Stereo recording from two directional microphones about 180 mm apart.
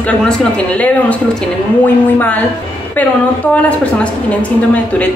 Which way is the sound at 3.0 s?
10° left (ahead or behind).